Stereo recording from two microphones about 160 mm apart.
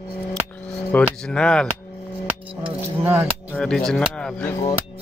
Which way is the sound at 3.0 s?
15° right (ahead or behind).